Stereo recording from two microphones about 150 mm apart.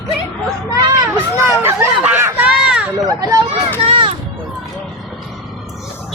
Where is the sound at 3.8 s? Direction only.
40° right (ahead or behind).